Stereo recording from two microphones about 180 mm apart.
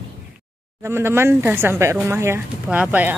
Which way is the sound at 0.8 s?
15° right (ahead or behind).